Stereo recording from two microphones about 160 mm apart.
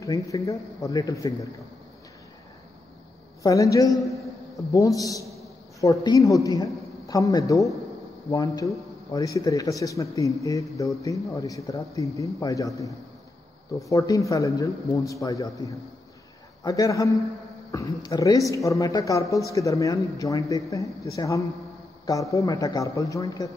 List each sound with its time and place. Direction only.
0.0 s a man's voice: 20° left (ahead or behind)
3.4 s a man's voice: 20° left (ahead or behind)
16.6 s a man's voice: 20° left (ahead or behind)